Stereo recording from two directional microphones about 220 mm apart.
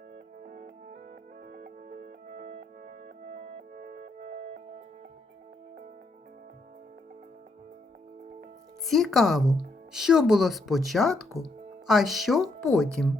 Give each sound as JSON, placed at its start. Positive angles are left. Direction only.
{"t": 0.4, "sound": "music", "side_deg": -45}
{"t": 3.8, "sound": "music", "side_deg": -45}
{"t": 8.9, "sound": "speech", "side_deg": 0}